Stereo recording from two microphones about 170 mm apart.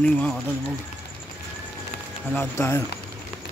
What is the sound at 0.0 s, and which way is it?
Speech, 5° left (ahead or behind).